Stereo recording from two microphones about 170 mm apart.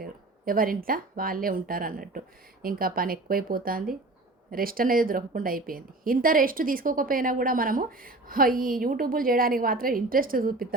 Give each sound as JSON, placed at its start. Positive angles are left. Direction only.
{"t": 0.0, "sound": "a woman's voice", "side_deg": -55}